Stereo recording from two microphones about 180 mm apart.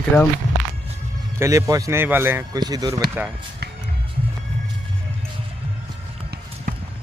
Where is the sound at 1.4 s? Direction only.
20° right (ahead or behind).